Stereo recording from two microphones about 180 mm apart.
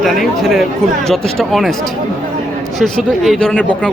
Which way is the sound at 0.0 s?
Centre (ahead or behind).